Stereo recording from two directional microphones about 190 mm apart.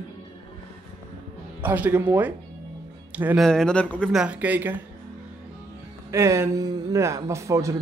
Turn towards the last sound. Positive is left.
turn(degrees=-15)  # may be behind; listen again after turning